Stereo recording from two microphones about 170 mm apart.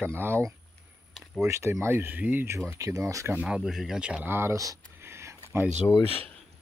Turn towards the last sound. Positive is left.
turn(degrees=10)  # may be behind; listen again after turning